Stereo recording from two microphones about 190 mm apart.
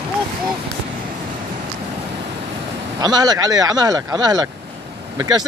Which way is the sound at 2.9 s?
20° right (ahead or behind).